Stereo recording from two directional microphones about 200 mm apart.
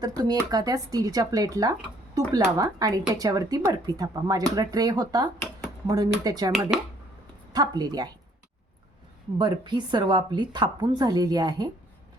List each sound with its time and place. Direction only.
0.0 s a woman's voice: 20° right (ahead or behind)
6.7 s speech: 5° right (ahead or behind)
7.5 s a woman's voice: 20° right (ahead or behind)
9.4 s a woman's voice: 20° right (ahead or behind)